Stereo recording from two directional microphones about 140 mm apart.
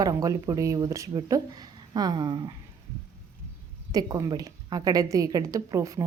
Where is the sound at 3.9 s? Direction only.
25° right (ahead or behind).